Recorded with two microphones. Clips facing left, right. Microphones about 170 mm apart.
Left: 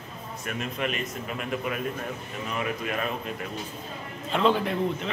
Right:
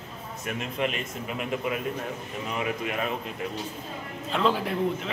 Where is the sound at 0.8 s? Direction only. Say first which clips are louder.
Right 2 dB; 25° right (ahead or behind).